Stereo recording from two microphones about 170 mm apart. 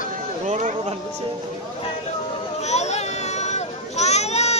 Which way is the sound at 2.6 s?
40° left (ahead or behind).